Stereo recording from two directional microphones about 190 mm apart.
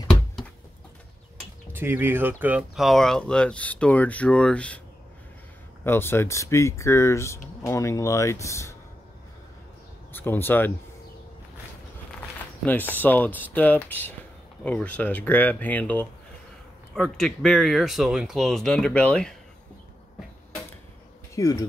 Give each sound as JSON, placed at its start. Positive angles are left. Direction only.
{"t": 1.7, "sound": "speech", "side_deg": -10}
{"t": 5.9, "sound": "speech", "side_deg": 10}
{"t": 10.1, "sound": "speech", "side_deg": 10}
{"t": 12.6, "sound": "speech", "side_deg": 10}
{"t": 21.4, "sound": "speech", "side_deg": 20}